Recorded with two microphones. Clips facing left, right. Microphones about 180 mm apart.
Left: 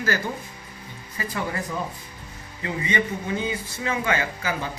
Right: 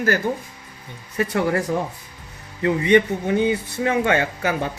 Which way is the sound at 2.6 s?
65° right (ahead or behind).